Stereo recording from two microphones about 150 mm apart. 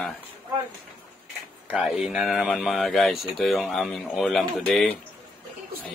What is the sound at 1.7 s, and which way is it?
Speech, 5° right (ahead or behind).